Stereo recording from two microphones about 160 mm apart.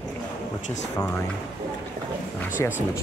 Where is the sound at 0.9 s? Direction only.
15° left (ahead or behind).